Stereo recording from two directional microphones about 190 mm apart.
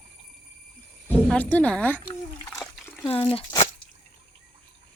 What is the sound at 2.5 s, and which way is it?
Splash, centre (ahead or behind).